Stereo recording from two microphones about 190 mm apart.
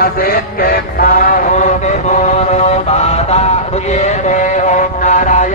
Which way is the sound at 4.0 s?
35° left (ahead or behind).